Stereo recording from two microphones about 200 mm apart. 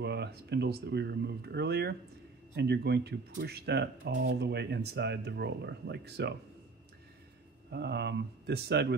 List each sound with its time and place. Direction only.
0.0 s speech: 55° right (ahead or behind)
7.7 s speech: 55° right (ahead or behind)